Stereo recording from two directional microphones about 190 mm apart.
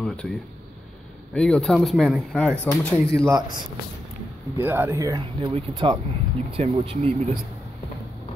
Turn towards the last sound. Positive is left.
turn(degrees=-40)  # may be behind; listen again after turning